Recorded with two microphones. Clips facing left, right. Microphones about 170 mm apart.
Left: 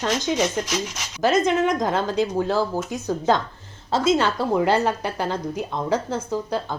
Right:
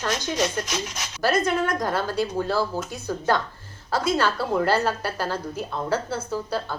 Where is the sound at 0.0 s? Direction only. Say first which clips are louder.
Left 3 dB; 15° left (ahead or behind).